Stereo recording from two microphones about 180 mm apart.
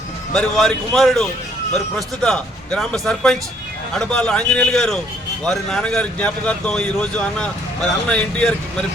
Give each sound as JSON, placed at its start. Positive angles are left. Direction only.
{"t": 0.3, "sound": "speech", "side_deg": 0}